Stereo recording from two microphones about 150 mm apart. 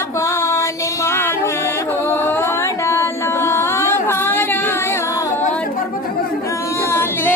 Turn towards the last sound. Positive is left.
turn(degrees=15)  # may be behind; listen again after turning